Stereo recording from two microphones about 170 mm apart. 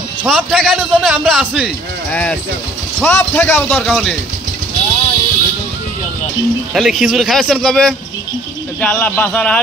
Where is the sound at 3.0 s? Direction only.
10° left (ahead or behind).